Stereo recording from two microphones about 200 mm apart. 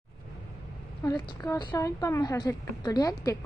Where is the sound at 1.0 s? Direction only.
15° left (ahead or behind).